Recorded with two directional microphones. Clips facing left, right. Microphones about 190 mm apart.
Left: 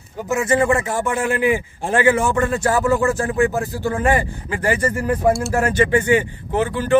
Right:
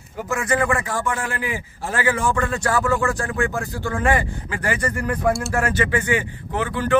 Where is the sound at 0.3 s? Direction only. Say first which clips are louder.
Left 4 dB; 25° left (ahead or behind).